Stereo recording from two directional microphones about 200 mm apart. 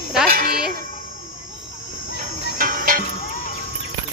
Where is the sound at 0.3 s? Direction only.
50° right (ahead or behind).